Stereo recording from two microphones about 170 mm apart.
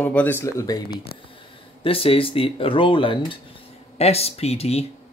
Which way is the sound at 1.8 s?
35° left (ahead or behind).